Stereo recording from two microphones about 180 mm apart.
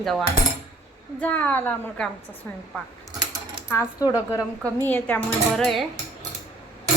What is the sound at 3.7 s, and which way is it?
Speech, 15° left (ahead or behind).